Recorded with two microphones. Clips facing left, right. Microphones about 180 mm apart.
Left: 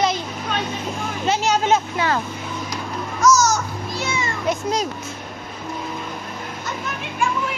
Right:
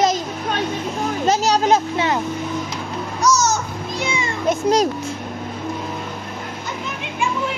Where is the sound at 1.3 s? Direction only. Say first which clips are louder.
Right 2 dB; 40° right (ahead or behind).